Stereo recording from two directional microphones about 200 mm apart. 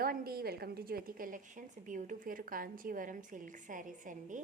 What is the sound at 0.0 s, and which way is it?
A woman's voice, 45° right (ahead or behind).